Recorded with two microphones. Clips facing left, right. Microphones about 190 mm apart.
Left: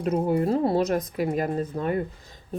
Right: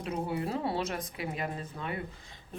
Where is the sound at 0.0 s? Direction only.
45° left (ahead or behind).